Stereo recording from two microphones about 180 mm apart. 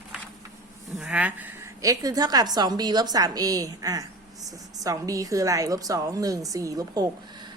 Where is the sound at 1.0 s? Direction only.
5° right (ahead or behind).